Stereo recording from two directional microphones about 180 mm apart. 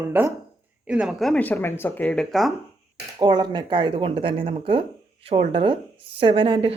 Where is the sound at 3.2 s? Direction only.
25° right (ahead or behind).